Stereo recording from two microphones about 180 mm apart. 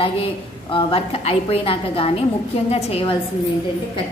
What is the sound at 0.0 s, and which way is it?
A woman's voice, 30° left (ahead or behind).